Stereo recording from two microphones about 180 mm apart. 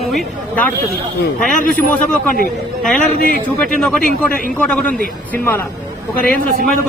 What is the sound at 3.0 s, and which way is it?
Speech, 50° left (ahead or behind).